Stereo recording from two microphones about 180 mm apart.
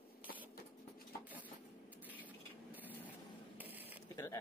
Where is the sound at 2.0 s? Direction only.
10° right (ahead or behind).